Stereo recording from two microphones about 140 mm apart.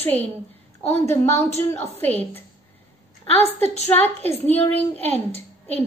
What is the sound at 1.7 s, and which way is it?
Speech, 50° left (ahead or behind).